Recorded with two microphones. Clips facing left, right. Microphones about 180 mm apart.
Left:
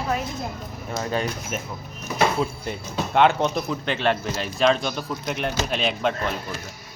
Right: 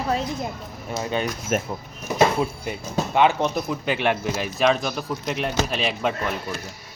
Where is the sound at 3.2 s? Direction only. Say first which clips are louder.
Left 1 dB; 5° right (ahead or behind).